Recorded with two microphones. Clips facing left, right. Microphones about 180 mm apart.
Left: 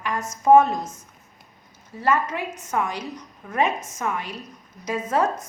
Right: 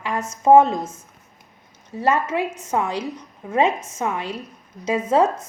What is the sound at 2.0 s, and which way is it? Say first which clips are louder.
A woman's voice: right 3 dB; 25° right (ahead or behind).